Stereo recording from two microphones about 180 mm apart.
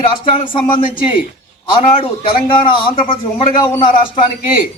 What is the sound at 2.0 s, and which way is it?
A man's voice, 30° left (ahead or behind).